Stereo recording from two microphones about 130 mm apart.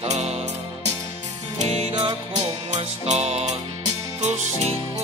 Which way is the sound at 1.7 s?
55° right (ahead or behind).